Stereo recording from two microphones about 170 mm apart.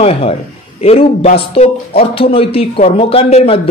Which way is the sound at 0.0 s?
35° left (ahead or behind).